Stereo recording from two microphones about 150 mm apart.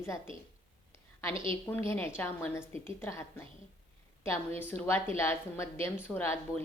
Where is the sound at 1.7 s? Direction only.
15° left (ahead or behind).